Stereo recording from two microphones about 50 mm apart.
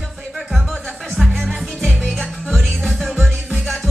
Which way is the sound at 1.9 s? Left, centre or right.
Centre.